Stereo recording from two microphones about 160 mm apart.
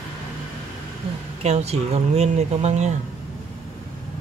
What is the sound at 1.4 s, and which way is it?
Speech, 40° right (ahead or behind).